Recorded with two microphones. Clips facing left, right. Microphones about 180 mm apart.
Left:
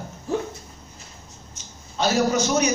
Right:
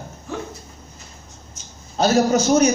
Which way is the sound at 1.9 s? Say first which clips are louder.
Right 4 dB; 45° right (ahead or behind).